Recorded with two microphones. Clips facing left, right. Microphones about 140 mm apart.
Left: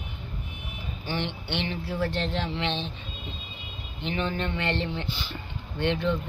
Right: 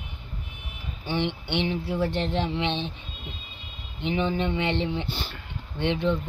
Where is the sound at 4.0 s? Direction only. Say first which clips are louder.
Right 4 dB; 15° right (ahead or behind).